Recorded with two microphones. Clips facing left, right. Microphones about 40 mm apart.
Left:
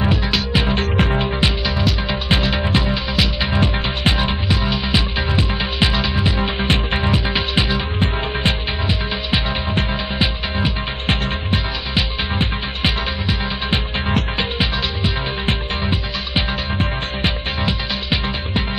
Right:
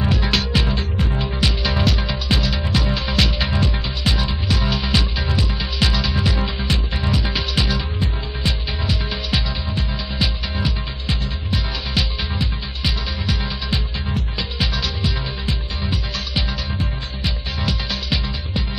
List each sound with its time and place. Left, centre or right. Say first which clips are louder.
0.2 s music: left 1 dB; centre
1.1 s music: left 4 dB; left
1.6 s music: even; centre
2.0 s music: left 3 dB; left
2.9 s music: left 1 dB; centre
3.5 s music: left 4 dB; left
4.5 s music: left 2 dB; centre
6.4 s music: left 5 dB; left
15.4 s music: left 5 dB; left